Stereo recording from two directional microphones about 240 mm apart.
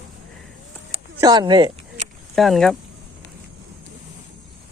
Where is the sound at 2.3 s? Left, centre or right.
Centre.